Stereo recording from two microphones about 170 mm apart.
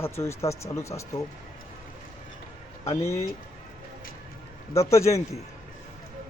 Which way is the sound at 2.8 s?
15° left (ahead or behind).